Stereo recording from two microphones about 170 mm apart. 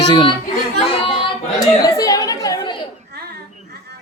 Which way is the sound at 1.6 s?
20° left (ahead or behind).